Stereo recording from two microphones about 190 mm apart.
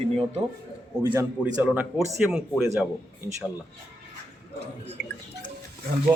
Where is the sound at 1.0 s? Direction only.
10° right (ahead or behind).